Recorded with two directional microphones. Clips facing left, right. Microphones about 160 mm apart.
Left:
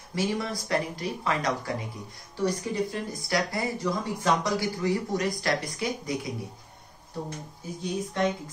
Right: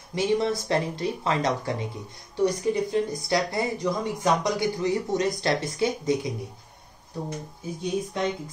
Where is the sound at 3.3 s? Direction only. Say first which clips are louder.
Right 3 dB; 20° right (ahead or behind).